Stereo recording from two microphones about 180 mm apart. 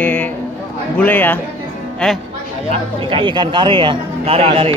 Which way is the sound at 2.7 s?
30° right (ahead or behind).